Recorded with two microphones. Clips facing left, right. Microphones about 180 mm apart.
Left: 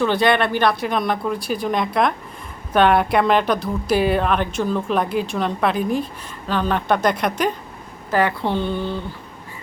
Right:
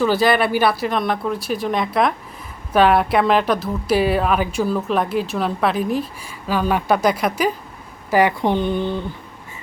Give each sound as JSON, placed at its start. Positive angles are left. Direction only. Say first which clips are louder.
{"t": 0.0, "sound": "a woman's voice", "louder": "right 1 dB", "side_deg": -5}
{"t": 8.1, "sound": "speech", "louder": "right 3 dB", "side_deg": -15}